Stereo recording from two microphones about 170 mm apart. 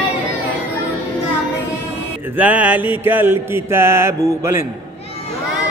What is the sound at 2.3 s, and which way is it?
Mantra, 10° right (ahead or behind).